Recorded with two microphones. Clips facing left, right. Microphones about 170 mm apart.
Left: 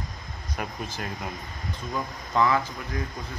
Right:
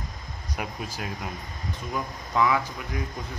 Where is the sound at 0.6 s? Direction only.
10° right (ahead or behind).